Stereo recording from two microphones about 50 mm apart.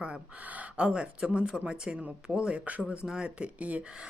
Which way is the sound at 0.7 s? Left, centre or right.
Right.